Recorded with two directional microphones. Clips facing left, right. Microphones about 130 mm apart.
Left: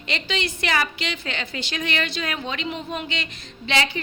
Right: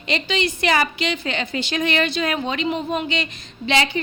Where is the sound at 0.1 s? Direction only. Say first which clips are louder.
Right 5 dB; 15° right (ahead or behind).